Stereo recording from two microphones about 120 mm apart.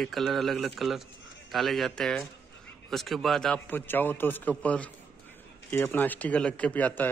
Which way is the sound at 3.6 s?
15° left (ahead or behind).